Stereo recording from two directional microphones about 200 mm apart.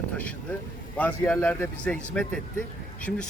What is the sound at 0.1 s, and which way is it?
Speech, 5° left (ahead or behind).